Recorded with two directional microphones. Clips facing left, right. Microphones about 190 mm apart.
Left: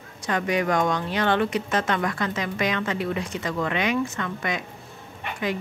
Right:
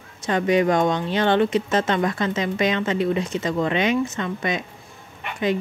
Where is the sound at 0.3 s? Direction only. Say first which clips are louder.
Right 5 dB; 25° right (ahead or behind).